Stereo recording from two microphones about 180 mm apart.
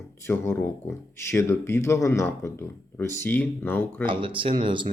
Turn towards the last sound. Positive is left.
turn(degrees=-25)  # may be behind; listen again after turning